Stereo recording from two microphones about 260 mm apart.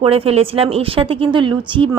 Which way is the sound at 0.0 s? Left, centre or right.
Right.